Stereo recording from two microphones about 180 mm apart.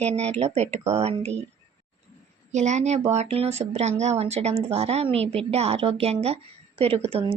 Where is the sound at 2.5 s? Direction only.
40° right (ahead or behind).